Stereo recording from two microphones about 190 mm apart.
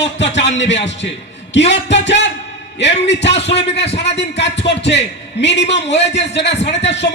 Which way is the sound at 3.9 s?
65° left (ahead or behind).